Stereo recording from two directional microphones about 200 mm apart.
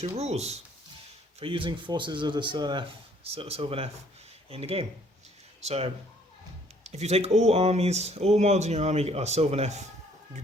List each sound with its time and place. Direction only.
0.0 s speech: 35° right (ahead or behind)